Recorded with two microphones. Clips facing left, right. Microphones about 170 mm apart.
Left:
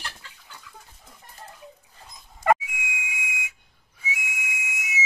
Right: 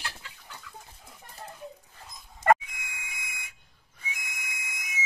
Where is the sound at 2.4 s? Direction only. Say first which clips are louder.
Left 1 dB; 5° left (ahead or behind).